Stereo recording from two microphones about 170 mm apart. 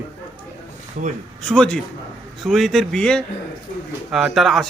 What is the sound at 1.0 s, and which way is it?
Speech, 50° right (ahead or behind).